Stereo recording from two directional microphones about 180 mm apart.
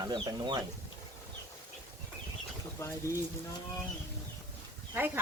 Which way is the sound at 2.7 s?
15° left (ahead or behind).